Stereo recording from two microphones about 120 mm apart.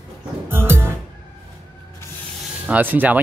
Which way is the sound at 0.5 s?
20° right (ahead or behind).